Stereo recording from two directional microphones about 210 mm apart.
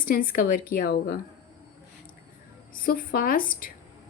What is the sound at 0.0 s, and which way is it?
Speech, 45° left (ahead or behind).